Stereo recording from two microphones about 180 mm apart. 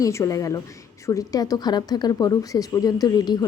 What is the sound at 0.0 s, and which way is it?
A woman's voice, 15° left (ahead or behind).